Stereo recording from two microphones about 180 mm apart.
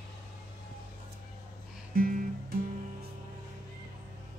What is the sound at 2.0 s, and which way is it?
Music, 50° right (ahead or behind).